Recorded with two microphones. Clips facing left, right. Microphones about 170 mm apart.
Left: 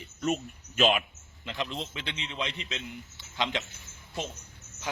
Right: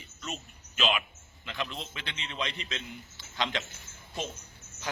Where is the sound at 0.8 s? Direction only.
45° left (ahead or behind).